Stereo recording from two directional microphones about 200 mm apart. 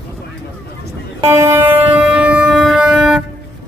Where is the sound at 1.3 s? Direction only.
15° right (ahead or behind).